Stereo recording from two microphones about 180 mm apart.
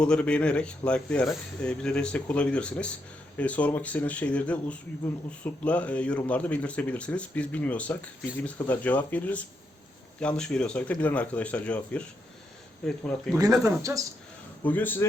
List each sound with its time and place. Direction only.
0.0 s speech: 5° left (ahead or behind)
13.3 s speech: 20° right (ahead or behind)
14.6 s speech: 10° left (ahead or behind)